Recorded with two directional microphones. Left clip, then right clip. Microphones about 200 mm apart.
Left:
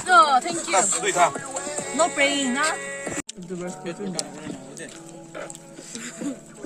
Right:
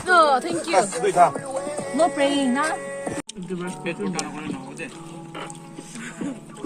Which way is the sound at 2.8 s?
50° left (ahead or behind).